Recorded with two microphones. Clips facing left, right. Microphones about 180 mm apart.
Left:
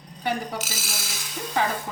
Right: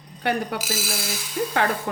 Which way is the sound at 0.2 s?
65° right (ahead or behind).